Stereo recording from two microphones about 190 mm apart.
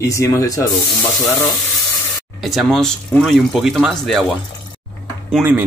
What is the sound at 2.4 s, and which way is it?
Speech, centre (ahead or behind).